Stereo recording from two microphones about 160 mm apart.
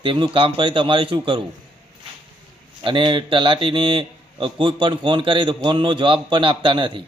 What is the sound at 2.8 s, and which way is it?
Speech, 30° right (ahead or behind).